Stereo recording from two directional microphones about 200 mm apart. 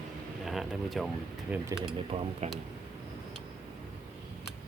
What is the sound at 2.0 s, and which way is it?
Speech, 30° right (ahead or behind).